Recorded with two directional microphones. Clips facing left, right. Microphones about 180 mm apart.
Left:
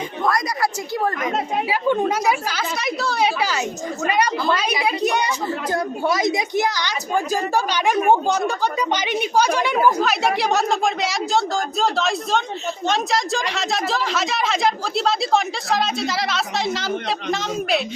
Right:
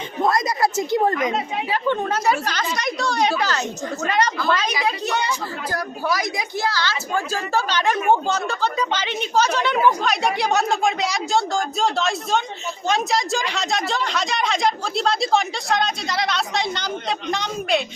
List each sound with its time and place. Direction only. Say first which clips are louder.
0.2 s chatter: right 2 dB; 25° right (ahead or behind)
1.7 s a woman's voice: left 2 dB; 10° left (ahead or behind)